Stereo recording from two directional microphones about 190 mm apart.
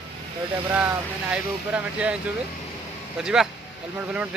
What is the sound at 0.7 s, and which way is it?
Speech, 15° right (ahead or behind).